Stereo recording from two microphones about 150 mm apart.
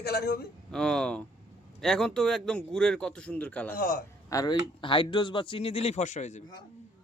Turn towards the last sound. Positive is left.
turn(degrees=50)  # may be behind; listen again after turning